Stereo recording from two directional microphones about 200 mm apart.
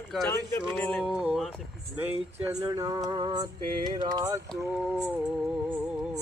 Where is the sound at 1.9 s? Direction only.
10° right (ahead or behind).